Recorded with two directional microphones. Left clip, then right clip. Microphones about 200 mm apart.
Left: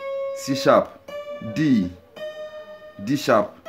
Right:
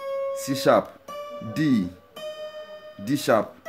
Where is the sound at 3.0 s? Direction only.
15° right (ahead or behind).